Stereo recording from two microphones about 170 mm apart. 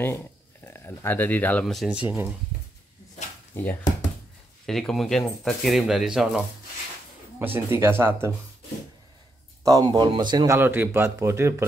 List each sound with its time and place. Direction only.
0.0 s speech: 15° left (ahead or behind); by 2.2 s 10° right (ahead or behind)
3.6 s a man's voice: 10° left (ahead or behind); by 8.3 s 15° right (ahead or behind)
9.6 s a man's voice: 20° right (ahead or behind)